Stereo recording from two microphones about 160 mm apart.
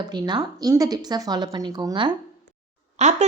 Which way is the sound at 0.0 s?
25° right (ahead or behind).